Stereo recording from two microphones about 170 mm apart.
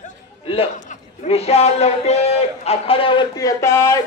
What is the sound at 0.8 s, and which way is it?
A man's voice, 40° left (ahead or behind).